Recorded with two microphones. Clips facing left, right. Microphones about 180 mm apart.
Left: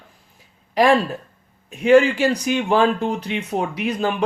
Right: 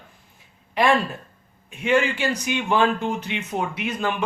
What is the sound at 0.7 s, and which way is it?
Speech, 35° left (ahead or behind).